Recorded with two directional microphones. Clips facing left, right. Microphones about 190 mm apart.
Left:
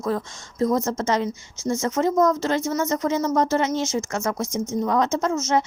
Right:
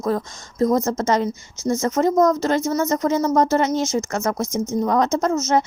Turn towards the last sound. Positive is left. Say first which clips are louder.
# right 3 dB
turn(degrees=-40)  # may be behind; listen again after turning